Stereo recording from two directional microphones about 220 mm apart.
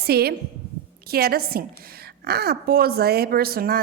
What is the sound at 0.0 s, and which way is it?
A woman's voice, 45° right (ahead or behind).